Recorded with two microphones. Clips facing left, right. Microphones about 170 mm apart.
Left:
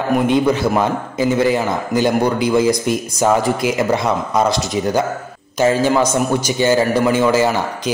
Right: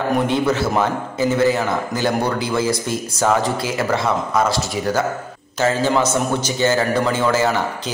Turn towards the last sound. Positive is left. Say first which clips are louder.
# left 3 dB
turn(degrees=15)  # may be behind; listen again after turning